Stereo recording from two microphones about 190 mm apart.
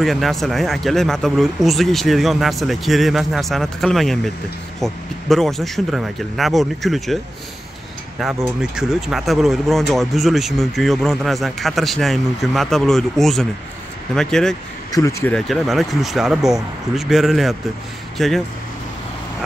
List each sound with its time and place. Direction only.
0.0 s speech: centre (ahead or behind)
8.7 s speech: centre (ahead or behind)
14.9 s speech: 15° left (ahead or behind)
15.3 s speech: centre (ahead or behind)